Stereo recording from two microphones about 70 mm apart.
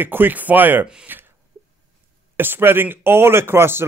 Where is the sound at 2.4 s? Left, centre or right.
Right.